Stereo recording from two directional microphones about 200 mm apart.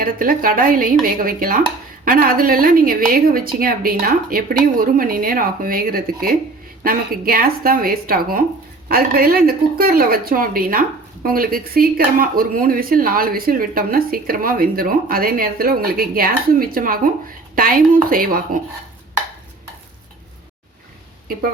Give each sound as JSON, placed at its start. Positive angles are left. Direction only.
{"t": 0.0, "sound": "speech", "side_deg": -45}